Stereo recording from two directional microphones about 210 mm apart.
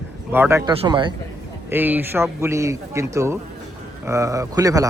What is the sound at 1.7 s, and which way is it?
A man's voice, 10° right (ahead or behind).